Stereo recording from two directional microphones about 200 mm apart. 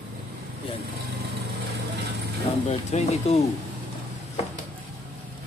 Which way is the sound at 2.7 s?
35° left (ahead or behind).